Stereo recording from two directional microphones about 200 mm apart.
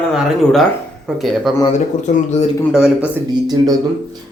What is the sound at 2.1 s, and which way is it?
Speech, 35° left (ahead or behind).